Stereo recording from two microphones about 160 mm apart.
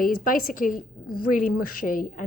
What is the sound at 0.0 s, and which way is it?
Speech, 60° left (ahead or behind).